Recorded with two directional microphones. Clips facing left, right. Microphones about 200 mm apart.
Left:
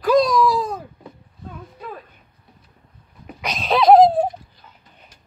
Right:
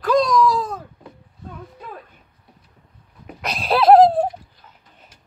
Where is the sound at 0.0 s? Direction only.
5° left (ahead or behind).